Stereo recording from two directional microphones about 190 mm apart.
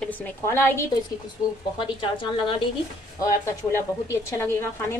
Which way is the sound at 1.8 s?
25° left (ahead or behind).